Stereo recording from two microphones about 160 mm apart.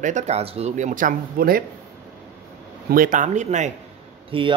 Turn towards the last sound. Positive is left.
turn(degrees=-35)  # may be behind; listen again after turning